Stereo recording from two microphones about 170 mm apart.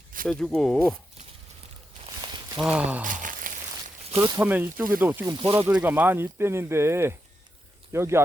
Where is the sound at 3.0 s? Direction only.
50° right (ahead or behind).